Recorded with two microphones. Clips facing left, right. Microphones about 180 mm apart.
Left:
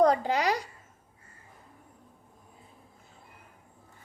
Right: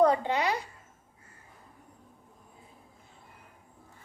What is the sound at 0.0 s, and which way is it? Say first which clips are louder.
Speech: left 1 dB; 35° left (ahead or behind).